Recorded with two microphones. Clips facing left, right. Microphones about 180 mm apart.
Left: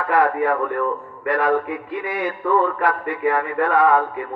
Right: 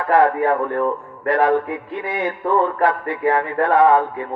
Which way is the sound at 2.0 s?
25° right (ahead or behind).